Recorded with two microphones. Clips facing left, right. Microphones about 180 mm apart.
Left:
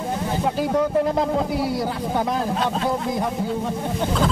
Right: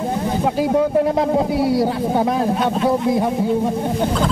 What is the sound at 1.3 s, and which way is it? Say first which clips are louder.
A man's voice: right 5 dB; 25° right (ahead or behind).